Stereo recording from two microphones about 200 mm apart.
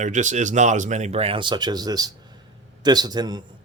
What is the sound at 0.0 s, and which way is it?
A man's voice, 40° right (ahead or behind).